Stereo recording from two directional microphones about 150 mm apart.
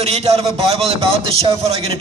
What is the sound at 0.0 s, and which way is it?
A man's voice, 45° right (ahead or behind).